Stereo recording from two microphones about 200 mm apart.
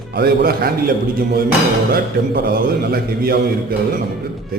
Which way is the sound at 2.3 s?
50° right (ahead or behind).